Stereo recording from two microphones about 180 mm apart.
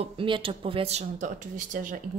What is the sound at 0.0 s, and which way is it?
Speech, 30° right (ahead or behind).